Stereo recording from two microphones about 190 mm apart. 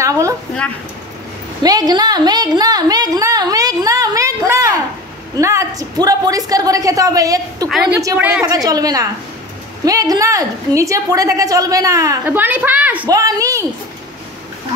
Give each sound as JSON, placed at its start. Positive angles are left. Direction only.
{"t": 0.0, "sound": "a sound", "side_deg": -15}
{"t": 1.6, "sound": "a woman's voice", "side_deg": -20}
{"t": 7.6, "sound": "a woman's voice", "side_deg": -5}
{"t": 13.0, "sound": "a woman's voice", "side_deg": -20}